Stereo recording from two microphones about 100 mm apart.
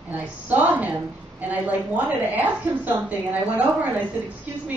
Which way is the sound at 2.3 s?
15° right (ahead or behind).